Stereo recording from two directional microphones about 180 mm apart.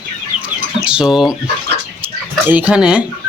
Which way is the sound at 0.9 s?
5° right (ahead or behind).